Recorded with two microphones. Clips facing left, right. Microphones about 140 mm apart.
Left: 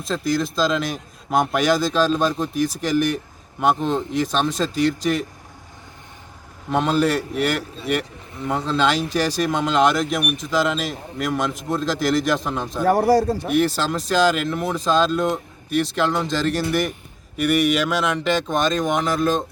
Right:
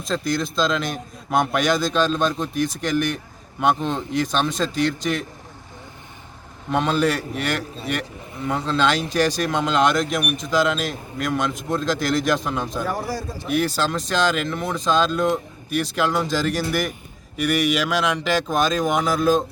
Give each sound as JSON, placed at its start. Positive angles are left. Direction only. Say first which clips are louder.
{"t": 0.0, "sound": "speech", "louder": "left 1 dB", "side_deg": 0}
{"t": 6.7, "sound": "speech", "louder": "left 1 dB", "side_deg": 0}
{"t": 12.8, "sound": "a man's voice", "louder": "left 10 dB", "side_deg": 70}
{"t": 13.5, "sound": "speech", "louder": "right 2 dB", "side_deg": 0}